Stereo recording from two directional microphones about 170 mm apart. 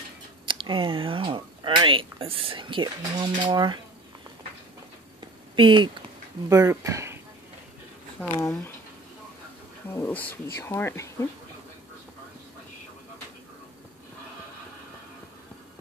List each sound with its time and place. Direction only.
0.5 s speech: 30° right (ahead or behind)
5.6 s speech: 30° right (ahead or behind)
6.5 s speech: 20° right (ahead or behind)
8.2 s speech: 10° left (ahead or behind)
9.9 s speech: 15° left (ahead or behind)